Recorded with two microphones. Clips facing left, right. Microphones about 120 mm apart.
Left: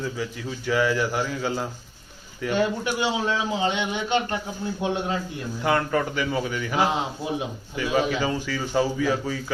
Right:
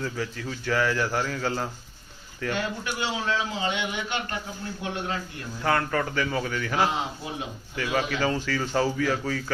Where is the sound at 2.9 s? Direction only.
20° left (ahead or behind).